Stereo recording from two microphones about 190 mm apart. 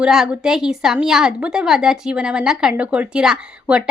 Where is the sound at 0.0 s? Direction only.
Centre (ahead or behind).